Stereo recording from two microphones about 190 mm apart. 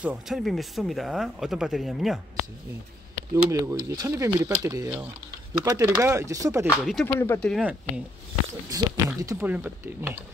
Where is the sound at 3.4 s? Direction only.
20° right (ahead or behind).